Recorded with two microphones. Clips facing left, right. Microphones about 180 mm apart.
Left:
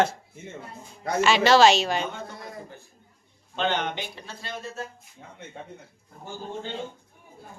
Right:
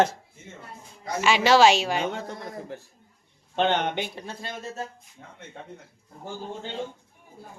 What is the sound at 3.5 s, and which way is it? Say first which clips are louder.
Speech: right 3 dB; 60° right (ahead or behind).